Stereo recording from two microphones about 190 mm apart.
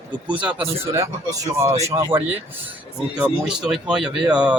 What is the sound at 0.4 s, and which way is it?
Speech, 15° right (ahead or behind).